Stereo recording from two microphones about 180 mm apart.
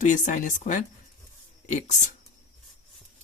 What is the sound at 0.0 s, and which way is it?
Speech, 45° left (ahead or behind).